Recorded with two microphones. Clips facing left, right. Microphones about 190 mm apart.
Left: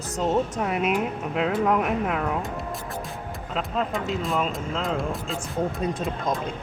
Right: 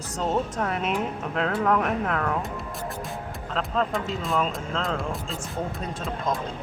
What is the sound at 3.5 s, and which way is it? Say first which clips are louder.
Speech: right 1 dB; 5° left (ahead or behind).